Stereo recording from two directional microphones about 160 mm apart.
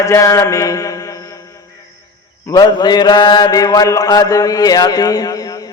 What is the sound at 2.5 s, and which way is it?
Mantra, 25° left (ahead or behind).